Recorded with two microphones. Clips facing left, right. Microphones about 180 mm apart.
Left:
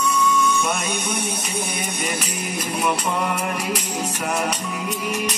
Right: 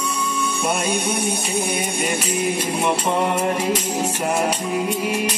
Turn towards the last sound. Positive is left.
turn(degrees=-25)  # may be behind; listen again after turning